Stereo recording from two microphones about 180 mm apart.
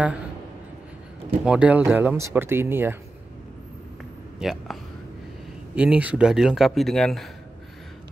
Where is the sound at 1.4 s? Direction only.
5° right (ahead or behind).